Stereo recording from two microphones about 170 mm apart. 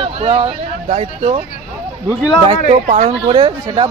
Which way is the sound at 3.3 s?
30° right (ahead or behind).